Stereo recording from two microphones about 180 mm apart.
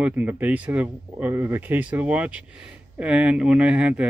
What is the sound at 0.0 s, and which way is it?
Speech, 10° right (ahead or behind).